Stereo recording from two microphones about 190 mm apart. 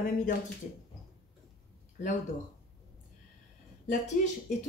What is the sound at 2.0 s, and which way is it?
Speech, 40° left (ahead or behind).